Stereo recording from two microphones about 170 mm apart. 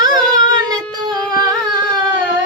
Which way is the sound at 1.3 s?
20° right (ahead or behind).